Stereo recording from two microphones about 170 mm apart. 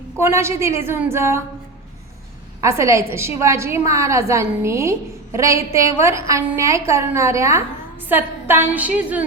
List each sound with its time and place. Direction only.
0.2 s a woman's voice: 15° right (ahead or behind)
2.6 s a woman's voice: 15° right (ahead or behind)